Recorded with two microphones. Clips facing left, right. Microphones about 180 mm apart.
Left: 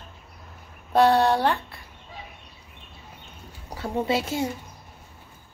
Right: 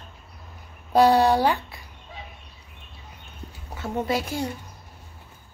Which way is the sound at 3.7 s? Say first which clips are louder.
Left 1 dB; 30° left (ahead or behind).